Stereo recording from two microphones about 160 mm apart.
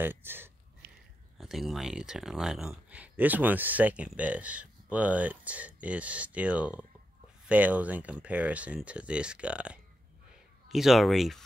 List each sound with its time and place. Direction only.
0.0 s speech: 15° right (ahead or behind)
0.8 s a sound: 80° right
1.4 s speech: centre (ahead or behind)